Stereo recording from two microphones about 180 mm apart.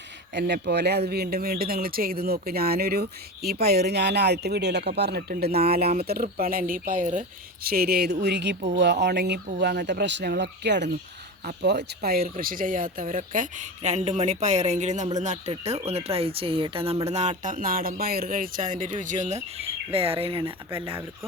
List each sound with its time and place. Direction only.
0.3 s speech: 70° right (ahead or behind); by 19.4 s 45° right (ahead or behind)
19.5 s speech: 30° right (ahead or behind)